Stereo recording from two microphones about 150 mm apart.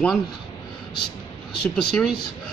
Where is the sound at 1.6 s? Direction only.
5° left (ahead or behind).